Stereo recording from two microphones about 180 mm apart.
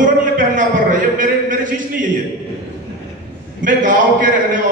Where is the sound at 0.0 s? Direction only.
45° right (ahead or behind).